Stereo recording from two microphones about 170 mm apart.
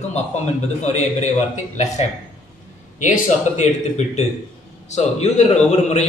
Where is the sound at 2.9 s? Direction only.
50° left (ahead or behind).